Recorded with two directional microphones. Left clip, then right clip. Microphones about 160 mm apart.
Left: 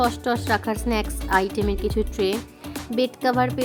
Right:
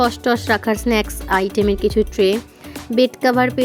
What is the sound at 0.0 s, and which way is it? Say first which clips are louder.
A woman's voice: right 5 dB; 35° right (ahead or behind).